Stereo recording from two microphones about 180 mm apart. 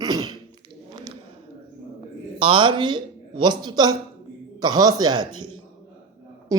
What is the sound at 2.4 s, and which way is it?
Speech, 25° right (ahead or behind).